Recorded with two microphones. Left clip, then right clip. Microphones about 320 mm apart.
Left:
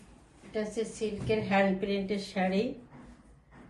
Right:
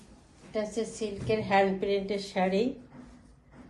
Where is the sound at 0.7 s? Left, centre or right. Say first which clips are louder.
Even; centre.